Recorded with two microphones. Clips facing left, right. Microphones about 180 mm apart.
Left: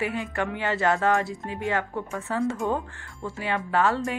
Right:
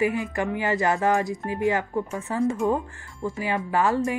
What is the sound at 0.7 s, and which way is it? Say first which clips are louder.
Speech: even; 20° right (ahead or behind).